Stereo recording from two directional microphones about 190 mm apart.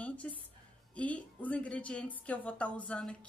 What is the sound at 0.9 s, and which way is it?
Speech, 5° left (ahead or behind).